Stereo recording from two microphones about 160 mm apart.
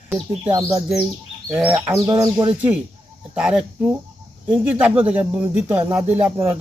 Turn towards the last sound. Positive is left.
turn(degrees=-15)  # may be behind; listen again after turning